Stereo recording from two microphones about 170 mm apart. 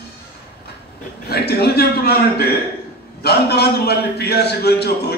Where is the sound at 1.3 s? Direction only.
70° left (ahead or behind).